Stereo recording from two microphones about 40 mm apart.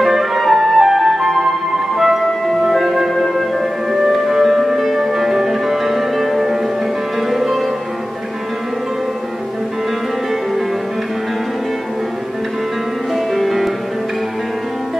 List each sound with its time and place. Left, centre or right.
0.0 s flute: centre
2.0 s music: centre
13.1 s music: centre